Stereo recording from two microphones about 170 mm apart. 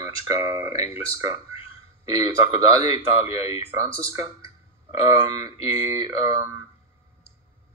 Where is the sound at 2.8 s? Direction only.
35° left (ahead or behind).